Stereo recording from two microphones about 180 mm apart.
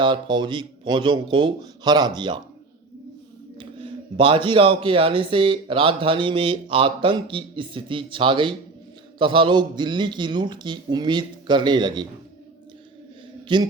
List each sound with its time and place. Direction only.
0.0 s speech: 25° right (ahead or behind)
3.6 s speech: 25° right (ahead or behind)
13.5 s speech: 25° right (ahead or behind)